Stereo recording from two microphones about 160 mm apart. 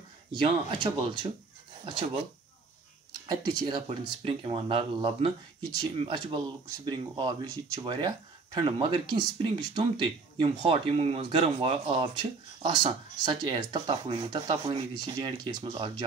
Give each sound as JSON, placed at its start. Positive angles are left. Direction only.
{"t": 0.3, "sound": "speech", "side_deg": -30}
{"t": 3.3, "sound": "speech", "side_deg": -25}